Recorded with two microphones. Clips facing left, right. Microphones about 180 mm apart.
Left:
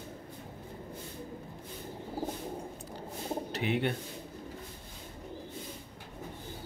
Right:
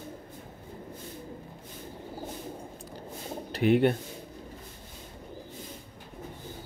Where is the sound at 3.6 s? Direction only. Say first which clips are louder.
Right 10 dB; 45° right (ahead or behind).